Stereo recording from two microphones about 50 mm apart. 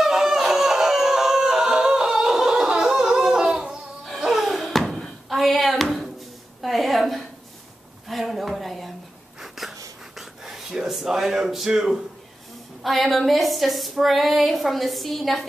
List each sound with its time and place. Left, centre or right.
0.0 s a sound: centre
4.2 s music: centre
4.6 s music: centre
6.6 s a sound: centre
9.4 s whispering: centre
12.8 s a woman's voice: centre